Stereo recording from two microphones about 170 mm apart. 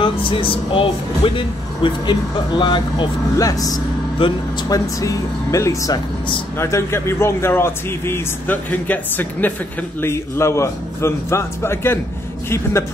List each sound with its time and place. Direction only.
0.0 s a man's voice: 30° left (ahead or behind); by 12.8 s 15° left (ahead or behind)